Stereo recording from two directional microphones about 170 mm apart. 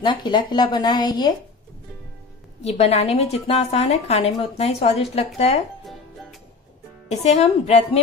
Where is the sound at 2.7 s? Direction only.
40° left (ahead or behind).